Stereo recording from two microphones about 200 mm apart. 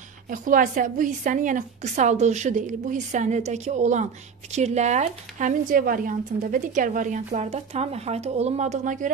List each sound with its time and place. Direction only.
0.3 s a woman's voice: 40° right (ahead or behind)